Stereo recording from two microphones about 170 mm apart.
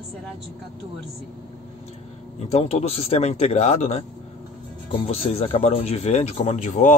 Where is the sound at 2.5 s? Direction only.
35° left (ahead or behind).